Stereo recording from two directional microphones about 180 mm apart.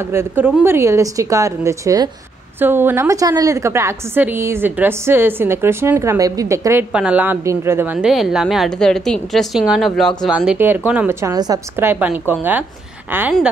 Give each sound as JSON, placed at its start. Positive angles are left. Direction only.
{"t": 0.0, "sound": "a woman's voice", "side_deg": -15}